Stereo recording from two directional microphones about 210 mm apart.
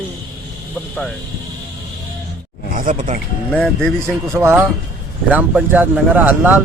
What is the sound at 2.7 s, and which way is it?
Speech, 40° right (ahead or behind).